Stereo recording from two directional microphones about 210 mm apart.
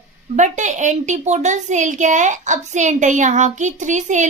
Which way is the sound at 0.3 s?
35° right (ahead or behind).